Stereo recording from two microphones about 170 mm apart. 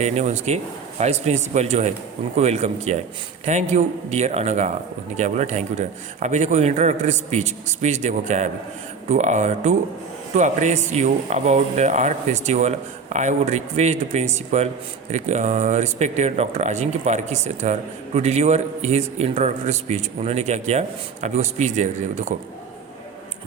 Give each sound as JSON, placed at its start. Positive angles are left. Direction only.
{"t": 0.0, "sound": "a man's voice", "side_deg": -40}